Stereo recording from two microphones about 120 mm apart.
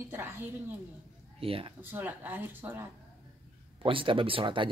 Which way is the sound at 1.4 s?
50° right (ahead or behind).